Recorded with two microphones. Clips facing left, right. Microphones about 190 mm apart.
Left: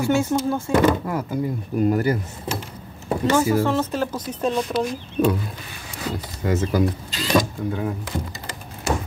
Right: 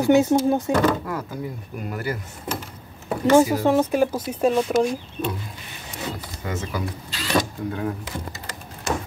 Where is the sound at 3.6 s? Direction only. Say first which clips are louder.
Right 4 dB; 15° right (ahead or behind).